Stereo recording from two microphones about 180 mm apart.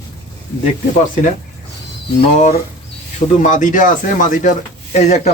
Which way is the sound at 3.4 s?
45° left (ahead or behind).